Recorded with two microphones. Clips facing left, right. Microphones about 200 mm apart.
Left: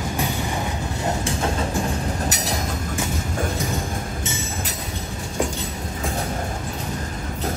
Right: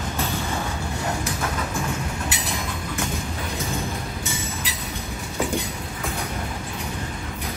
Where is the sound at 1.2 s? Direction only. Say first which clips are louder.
Left 4 dB; 30° left (ahead or behind).